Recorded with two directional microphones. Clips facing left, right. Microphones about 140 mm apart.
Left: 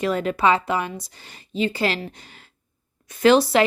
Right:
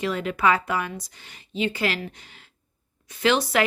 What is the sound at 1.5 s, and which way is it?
Speech, 35° left (ahead or behind).